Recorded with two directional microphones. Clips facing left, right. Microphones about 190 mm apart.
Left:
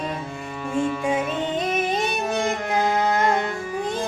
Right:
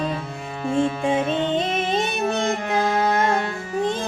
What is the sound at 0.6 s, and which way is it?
Music, 30° right (ahead or behind).